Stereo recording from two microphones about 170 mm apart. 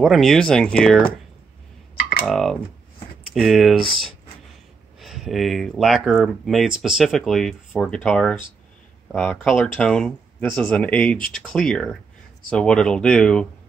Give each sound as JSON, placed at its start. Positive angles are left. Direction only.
{"t": 0.0, "sound": "speech", "side_deg": 0}
{"t": 2.2, "sound": "speech", "side_deg": 0}
{"t": 5.0, "sound": "speech", "side_deg": 0}